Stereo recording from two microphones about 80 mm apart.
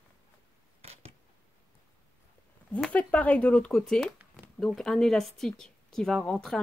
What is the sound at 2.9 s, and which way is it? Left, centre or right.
Speech, centre.